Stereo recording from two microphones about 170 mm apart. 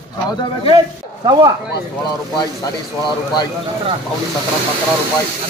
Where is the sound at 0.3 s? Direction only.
25° left (ahead or behind).